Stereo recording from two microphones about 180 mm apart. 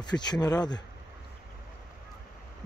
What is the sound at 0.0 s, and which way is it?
Speech, 25° left (ahead or behind).